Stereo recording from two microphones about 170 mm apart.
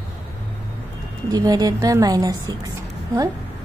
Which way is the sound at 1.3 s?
20° right (ahead or behind).